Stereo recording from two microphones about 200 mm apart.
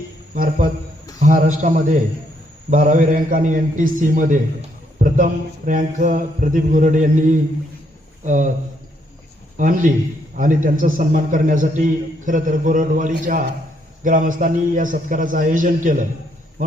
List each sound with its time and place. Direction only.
0.3 s a man's voice: 45° right (ahead or behind)
9.6 s a man's voice: 40° right (ahead or behind)